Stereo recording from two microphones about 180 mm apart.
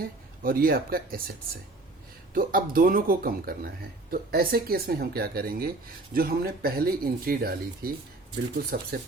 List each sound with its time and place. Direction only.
0.0 s speech: 55° right (ahead or behind)
2.3 s speech: 50° right (ahead or behind)